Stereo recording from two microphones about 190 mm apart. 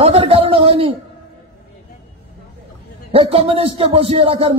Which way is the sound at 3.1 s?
30° right (ahead or behind).